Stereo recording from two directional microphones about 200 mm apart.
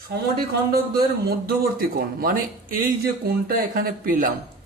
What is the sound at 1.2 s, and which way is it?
Speech, 50° right (ahead or behind).